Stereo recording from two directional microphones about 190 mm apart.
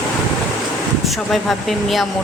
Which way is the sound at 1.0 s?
Centre (ahead or behind).